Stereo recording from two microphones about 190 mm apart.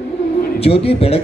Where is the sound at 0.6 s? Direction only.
30° left (ahead or behind).